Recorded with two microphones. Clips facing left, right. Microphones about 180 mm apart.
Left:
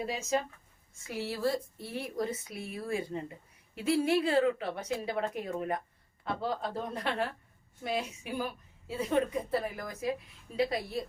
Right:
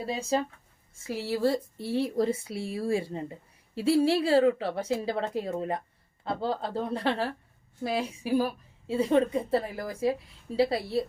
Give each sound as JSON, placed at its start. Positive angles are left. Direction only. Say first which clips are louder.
{"t": 0.0, "sound": "a woman's voice", "louder": "right 3 dB", "side_deg": -30}